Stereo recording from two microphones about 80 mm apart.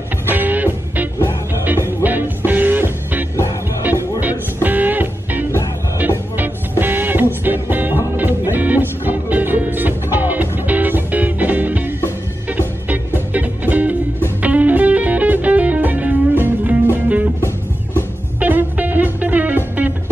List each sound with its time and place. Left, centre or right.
0.3 s music: right
18.4 s music: right